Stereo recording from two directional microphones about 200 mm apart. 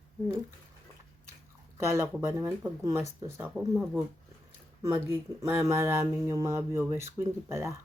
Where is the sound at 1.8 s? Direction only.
15° right (ahead or behind).